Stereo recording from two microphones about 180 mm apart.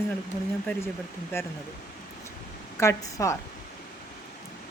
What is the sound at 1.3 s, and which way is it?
Speech, 15° left (ahead or behind).